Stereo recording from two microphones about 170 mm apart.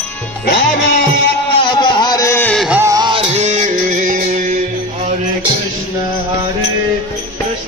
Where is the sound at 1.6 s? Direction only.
30° left (ahead or behind).